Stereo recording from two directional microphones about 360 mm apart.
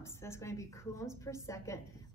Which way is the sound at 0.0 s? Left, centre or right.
Centre.